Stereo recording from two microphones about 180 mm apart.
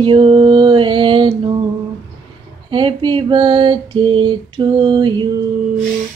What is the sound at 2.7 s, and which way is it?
Female singing, 25° right (ahead or behind).